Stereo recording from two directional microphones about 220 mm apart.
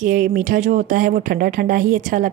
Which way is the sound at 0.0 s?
35° right (ahead or behind).